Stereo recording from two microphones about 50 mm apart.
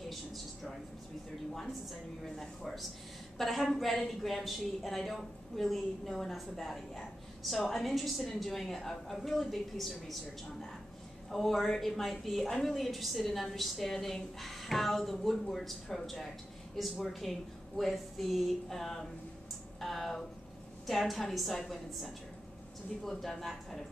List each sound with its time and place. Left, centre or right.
1.5 s a woman's voice: centre